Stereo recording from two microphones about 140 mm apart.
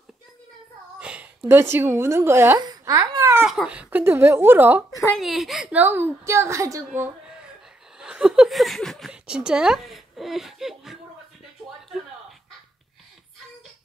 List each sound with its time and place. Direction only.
0.9 s a woman's voice: 10° right (ahead or behind)
2.6 s a sound: 25° right (ahead or behind)
3.4 s a woman's voice: 5° right (ahead or behind)
5.1 s a woman's voice: centre (ahead or behind)
8.0 s chuckle: 5° right (ahead or behind)
9.1 s speech: 5° right (ahead or behind)